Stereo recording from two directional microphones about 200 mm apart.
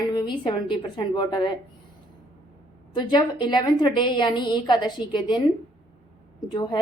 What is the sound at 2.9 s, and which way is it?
A woman's voice, 25° left (ahead or behind).